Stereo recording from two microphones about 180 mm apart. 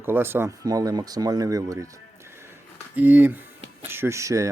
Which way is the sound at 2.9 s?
10° right (ahead or behind).